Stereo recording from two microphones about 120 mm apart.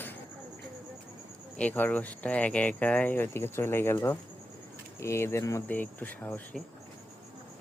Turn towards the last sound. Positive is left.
turn(degrees=15)  # may be behind; listen again after turning